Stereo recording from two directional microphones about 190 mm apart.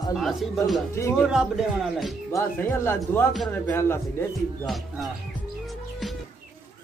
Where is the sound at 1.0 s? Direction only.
15° left (ahead or behind).